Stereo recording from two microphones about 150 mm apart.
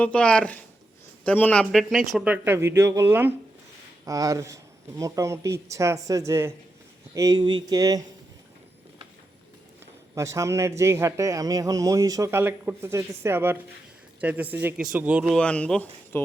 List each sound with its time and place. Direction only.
0.0 s a man's voice: 5° left (ahead or behind); by 8.0 s 25° right (ahead or behind)
9.8 s a man's voice: 20° right (ahead or behind)
15.4 s speech: 10° left (ahead or behind)